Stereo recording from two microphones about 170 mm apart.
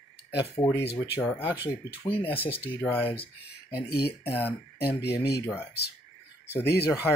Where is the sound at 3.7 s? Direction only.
70° left (ahead or behind).